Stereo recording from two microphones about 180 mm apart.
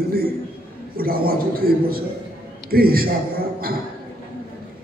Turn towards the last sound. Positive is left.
turn(degrees=-55)  # may be behind; listen again after turning